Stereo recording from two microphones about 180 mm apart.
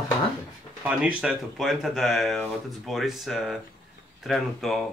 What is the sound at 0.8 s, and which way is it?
Speech, 10° right (ahead or behind).